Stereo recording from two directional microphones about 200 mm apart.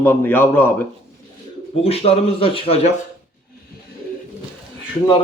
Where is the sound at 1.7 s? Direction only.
30° left (ahead or behind).